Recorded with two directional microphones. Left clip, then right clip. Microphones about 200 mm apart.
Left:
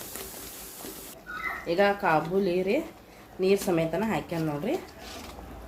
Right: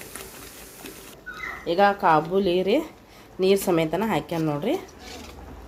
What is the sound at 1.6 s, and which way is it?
Speech, 25° right (ahead or behind).